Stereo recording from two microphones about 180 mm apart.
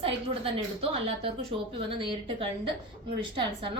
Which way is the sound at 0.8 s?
35° right (ahead or behind).